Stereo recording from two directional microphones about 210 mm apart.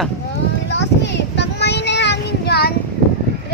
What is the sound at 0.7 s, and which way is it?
Child singing, 55° left (ahead or behind).